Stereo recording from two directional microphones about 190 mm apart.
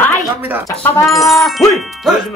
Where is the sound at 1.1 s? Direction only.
Centre (ahead or behind).